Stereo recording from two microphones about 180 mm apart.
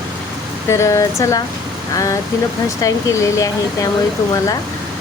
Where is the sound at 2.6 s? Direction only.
15° left (ahead or behind).